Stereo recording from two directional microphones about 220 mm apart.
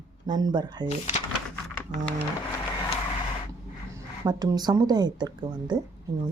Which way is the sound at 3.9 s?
15° right (ahead or behind).